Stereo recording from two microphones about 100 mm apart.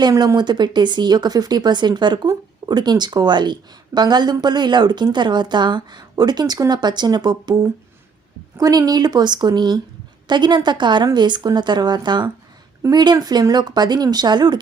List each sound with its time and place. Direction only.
0.1 s a woman's voice: 30° right (ahead or behind)
0.3 s speech: 50° right (ahead or behind)
8.5 s speech: 40° right (ahead or behind)